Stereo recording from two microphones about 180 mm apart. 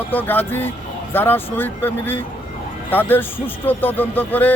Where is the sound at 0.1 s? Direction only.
10° left (ahead or behind).